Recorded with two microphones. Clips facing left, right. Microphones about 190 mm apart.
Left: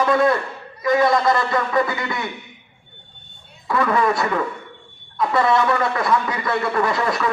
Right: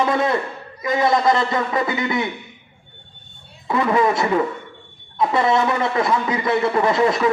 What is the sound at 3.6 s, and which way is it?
Speech, 20° right (ahead or behind).